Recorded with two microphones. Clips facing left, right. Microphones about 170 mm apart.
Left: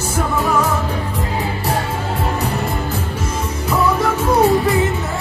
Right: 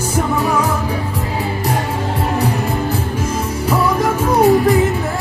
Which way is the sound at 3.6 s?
10° right (ahead or behind).